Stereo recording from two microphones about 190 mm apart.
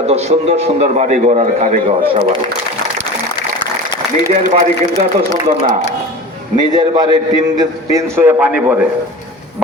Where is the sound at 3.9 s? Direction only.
20° left (ahead or behind).